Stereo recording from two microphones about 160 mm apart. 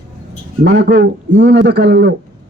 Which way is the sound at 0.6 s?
90° right.